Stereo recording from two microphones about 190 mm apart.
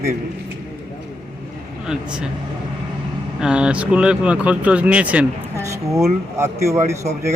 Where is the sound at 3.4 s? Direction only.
5° right (ahead or behind).